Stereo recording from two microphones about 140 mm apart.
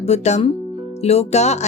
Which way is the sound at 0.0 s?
55° left (ahead or behind).